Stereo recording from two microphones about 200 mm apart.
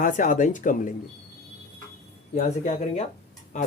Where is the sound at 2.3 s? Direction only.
35° left (ahead or behind).